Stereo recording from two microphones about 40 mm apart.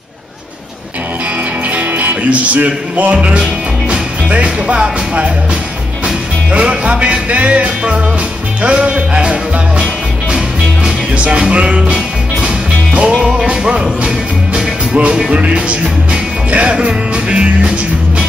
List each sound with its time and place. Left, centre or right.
1.8 s music: right
2.2 s speech: right
6.5 s music: right